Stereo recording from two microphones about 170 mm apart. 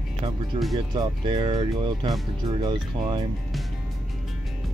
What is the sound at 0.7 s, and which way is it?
Speech, 25° right (ahead or behind).